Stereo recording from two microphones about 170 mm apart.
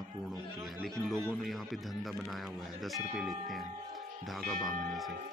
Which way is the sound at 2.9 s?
Centre (ahead or behind).